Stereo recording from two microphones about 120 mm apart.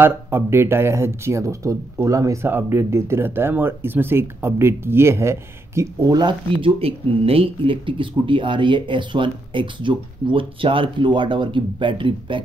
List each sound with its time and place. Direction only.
0.0 s speech: 20° right (ahead or behind)
6.1 s speech: 45° right (ahead or behind)